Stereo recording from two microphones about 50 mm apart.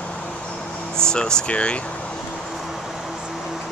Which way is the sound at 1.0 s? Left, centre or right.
Centre.